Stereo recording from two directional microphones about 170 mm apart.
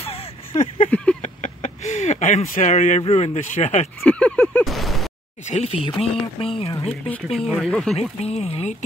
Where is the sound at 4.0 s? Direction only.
5° left (ahead or behind).